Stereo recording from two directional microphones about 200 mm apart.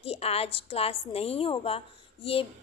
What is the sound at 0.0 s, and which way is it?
A woman's voice, 30° left (ahead or behind).